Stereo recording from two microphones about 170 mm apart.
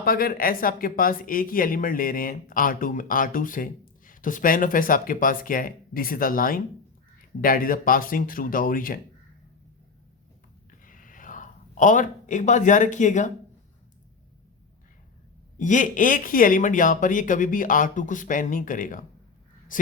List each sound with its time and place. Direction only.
0.0 s speech: 60° left (ahead or behind)
10.8 s a sound: 50° left (ahead or behind)
15.5 s speech: 50° left (ahead or behind)